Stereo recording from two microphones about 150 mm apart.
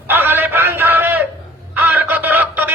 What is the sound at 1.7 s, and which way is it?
Music, 10° right (ahead or behind).